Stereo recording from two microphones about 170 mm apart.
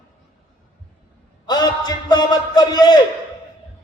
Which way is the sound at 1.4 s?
25° left (ahead or behind).